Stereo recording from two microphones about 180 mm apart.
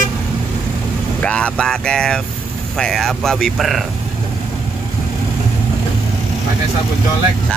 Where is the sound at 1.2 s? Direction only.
5° left (ahead or behind).